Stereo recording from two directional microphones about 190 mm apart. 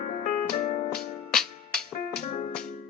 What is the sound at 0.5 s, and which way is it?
Music, 40° left (ahead or behind).